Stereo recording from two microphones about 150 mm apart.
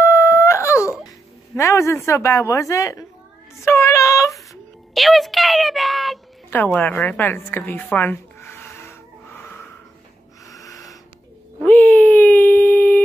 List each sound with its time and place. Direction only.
0.0 s wail: 15° left (ahead or behind)
1.6 s a woman's voice: 20° left (ahead or behind)
3.6 s child singing: 20° left (ahead or behind)
4.9 s speech: centre (ahead or behind)
6.5 s a sound: 10° left (ahead or behind)
10.6 s wheeze: 20° left (ahead or behind)
11.6 s a sound: 10° left (ahead or behind)